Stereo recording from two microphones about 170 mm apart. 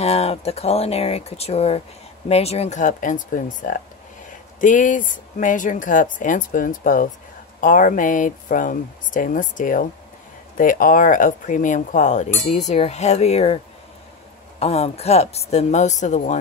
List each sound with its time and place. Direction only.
0.0 s speech: 35° left (ahead or behind)
14.6 s speech: 35° left (ahead or behind)